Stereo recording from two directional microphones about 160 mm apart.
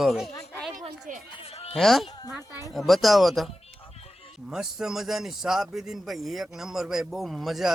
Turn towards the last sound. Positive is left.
turn(degrees=0)  # may be behind; listen again after turning